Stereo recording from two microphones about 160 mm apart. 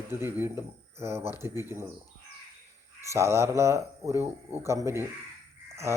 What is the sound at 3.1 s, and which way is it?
Speech, 15° right (ahead or behind).